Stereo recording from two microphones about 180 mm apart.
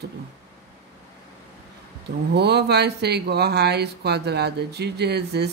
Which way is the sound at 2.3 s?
65° right (ahead or behind).